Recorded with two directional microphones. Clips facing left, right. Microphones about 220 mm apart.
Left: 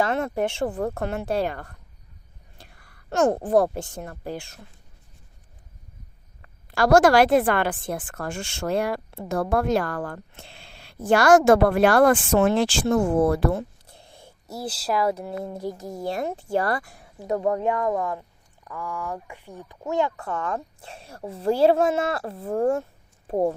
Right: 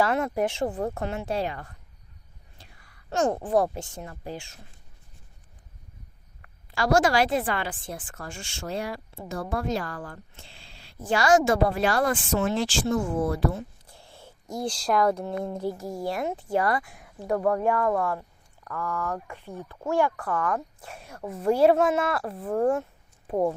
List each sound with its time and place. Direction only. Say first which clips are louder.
0.0 s speech: left 1 dB; 25° left (ahead or behind)
0.6 s speech: left 2 dB; 45° left (ahead or behind)
2.6 s a sound: left 4 dB; 50° left (ahead or behind)
3.3 s speech: left 4 dB; 35° left (ahead or behind)
4.0 s speech: left 4 dB; 50° left (ahead or behind)
6.7 s a woman's voice: left 6 dB; 55° left (ahead or behind)
13.8 s speech: even; 20° left (ahead or behind); by 17.1 s 35° left (ahead or behind)
17.2 s speech: even; 20° left (ahead or behind)
22.7 s a sound: left 1 dB; 30° left (ahead or behind)